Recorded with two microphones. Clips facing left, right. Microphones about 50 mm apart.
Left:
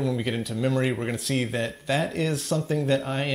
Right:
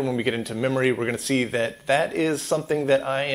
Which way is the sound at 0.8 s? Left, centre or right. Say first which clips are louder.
Right 4 dB; right.